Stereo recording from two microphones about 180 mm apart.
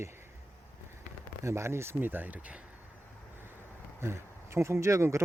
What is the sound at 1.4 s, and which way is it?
Speech, 15° right (ahead or behind).